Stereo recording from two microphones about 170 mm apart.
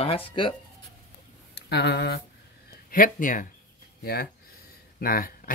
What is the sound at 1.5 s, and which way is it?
Speech, 75° left (ahead or behind).